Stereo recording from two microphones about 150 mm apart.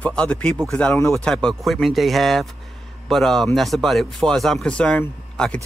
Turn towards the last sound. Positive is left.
turn(degrees=5)  # may be behind; listen again after turning